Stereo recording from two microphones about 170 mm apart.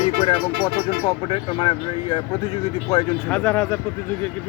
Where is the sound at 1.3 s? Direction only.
30° left (ahead or behind).